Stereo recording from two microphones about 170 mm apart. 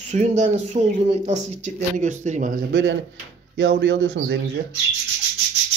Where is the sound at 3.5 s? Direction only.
90° right.